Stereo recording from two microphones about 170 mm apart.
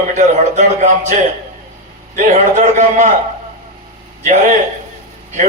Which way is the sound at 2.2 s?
45° right (ahead or behind).